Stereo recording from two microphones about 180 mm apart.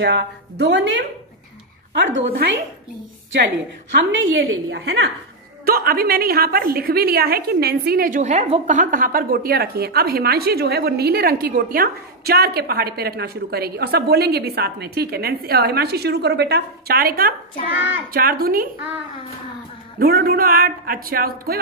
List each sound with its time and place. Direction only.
0.0 s a woman's voice: 70° right (ahead or behind)
2.0 s a woman's voice: 85° right
5.7 s a woman's voice: 55° right (ahead or behind)
20.0 s a woman's voice: 55° right (ahead or behind)